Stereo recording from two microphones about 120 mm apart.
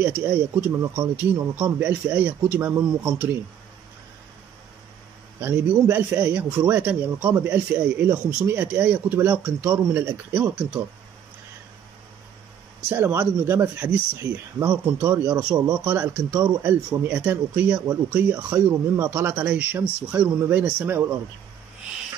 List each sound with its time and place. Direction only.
0.3 s speech: 20° right (ahead or behind)
5.4 s speech: 20° right (ahead or behind)
12.9 s speech: 20° right (ahead or behind)